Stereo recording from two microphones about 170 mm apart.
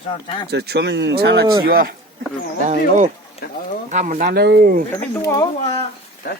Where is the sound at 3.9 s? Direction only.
50° right (ahead or behind).